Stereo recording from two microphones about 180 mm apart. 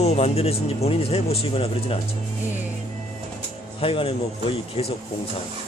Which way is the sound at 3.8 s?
30° left (ahead or behind).